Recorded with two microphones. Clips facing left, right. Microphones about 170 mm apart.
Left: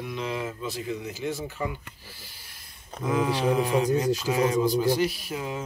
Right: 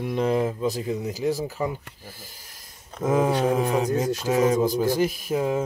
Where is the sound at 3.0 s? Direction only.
45° right (ahead or behind).